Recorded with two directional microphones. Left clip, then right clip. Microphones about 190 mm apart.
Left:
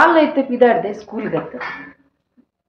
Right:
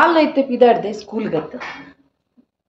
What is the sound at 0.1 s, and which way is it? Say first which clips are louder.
Speech: left 1 dB; 15° right (ahead or behind).